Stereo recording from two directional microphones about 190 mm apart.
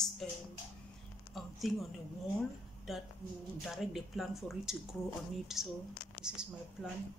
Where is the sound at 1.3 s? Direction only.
Centre (ahead or behind).